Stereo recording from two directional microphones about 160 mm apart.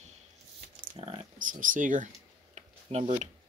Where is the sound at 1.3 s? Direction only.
55° right (ahead or behind).